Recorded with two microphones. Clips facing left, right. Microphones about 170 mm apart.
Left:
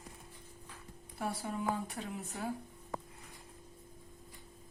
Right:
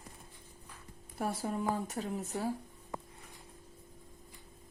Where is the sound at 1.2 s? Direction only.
40° right (ahead or behind).